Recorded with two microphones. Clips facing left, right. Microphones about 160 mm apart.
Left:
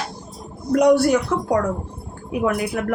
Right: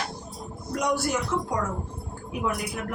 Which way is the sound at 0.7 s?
65° left (ahead or behind).